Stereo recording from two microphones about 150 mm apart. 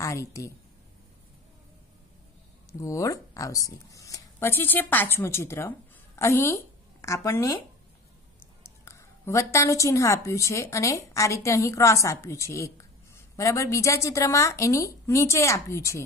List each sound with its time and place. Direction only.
0.0 s a woman's voice: 20° left (ahead or behind)
2.8 s speech: 20° left (ahead or behind)
8.6 s a woman's voice: 15° left (ahead or behind)